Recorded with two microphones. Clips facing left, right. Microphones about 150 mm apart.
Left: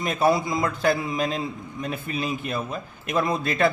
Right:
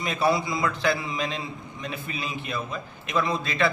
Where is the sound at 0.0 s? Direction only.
45° left (ahead or behind).